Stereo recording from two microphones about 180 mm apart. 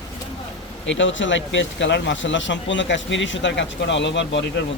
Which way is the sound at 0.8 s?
90° left.